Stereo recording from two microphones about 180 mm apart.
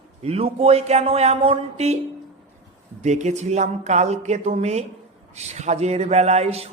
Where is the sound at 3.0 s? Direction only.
40° right (ahead or behind).